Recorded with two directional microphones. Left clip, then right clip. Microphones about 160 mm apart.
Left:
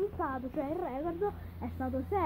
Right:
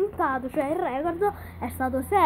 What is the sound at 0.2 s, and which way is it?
A woman's voice, centre (ahead or behind).